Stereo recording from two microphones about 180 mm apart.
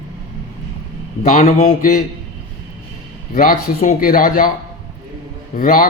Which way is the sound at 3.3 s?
50° left (ahead or behind).